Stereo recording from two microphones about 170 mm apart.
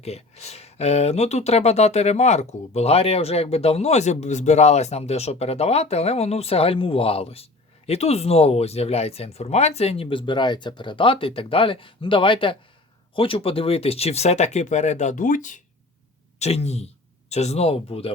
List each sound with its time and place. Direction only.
0.0 s speech: 40° left (ahead or behind)
16.4 s speech: 40° left (ahead or behind)